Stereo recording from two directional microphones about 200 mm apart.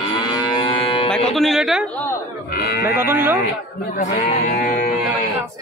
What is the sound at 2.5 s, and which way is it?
Speech, 50° left (ahead or behind).